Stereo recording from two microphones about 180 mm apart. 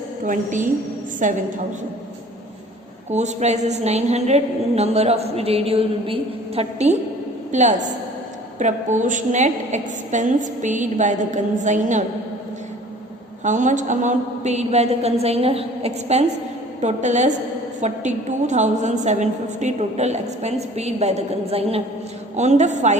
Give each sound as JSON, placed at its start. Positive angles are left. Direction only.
{"t": 0.3, "sound": "a woman's voice", "side_deg": -45}
{"t": 3.1, "sound": "a woman's voice", "side_deg": -40}
{"t": 13.4, "sound": "a woman's voice", "side_deg": -45}